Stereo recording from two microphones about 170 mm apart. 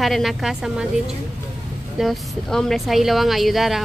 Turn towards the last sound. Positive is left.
turn(degrees=0)  # may be behind; listen again after turning